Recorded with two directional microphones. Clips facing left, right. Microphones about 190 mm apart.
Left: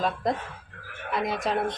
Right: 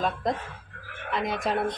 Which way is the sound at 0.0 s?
Centre (ahead or behind).